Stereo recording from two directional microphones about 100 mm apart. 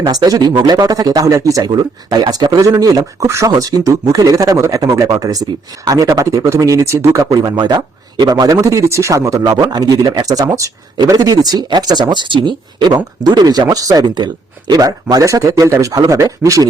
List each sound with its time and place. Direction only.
0.1 s speech: 40° right (ahead or behind)